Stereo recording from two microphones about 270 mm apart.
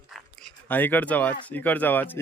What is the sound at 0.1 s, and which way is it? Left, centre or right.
Speech, centre.